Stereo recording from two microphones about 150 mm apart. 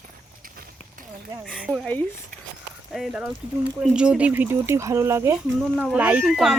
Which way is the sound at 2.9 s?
Centre (ahead or behind).